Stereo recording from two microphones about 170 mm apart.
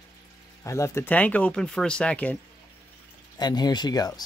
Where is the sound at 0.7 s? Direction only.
15° left (ahead or behind).